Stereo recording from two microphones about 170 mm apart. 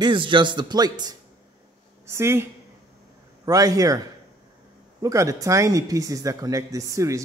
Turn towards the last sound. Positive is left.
turn(degrees=-20)  # may be behind; listen again after turning